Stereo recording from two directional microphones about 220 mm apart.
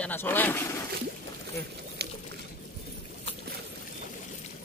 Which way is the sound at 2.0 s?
50° right (ahead or behind).